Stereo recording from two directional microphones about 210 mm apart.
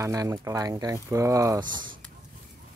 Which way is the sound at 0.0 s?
15° right (ahead or behind).